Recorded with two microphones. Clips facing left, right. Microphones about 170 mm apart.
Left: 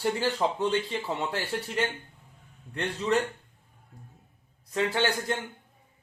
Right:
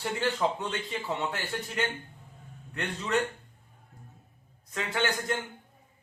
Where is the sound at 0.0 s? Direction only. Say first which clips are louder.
Left 2 dB; 35° left (ahead or behind).